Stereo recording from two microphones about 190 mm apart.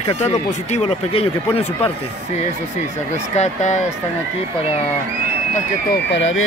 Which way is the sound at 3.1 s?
35° left (ahead or behind).